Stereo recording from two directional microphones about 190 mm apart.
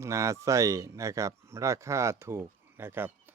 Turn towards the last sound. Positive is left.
turn(degrees=-10)  # may be behind; listen again after turning